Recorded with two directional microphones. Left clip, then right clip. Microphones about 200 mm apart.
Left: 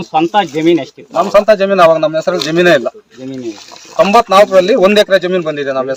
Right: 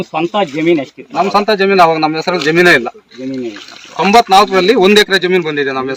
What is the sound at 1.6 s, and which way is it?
A man's voice, 15° left (ahead or behind).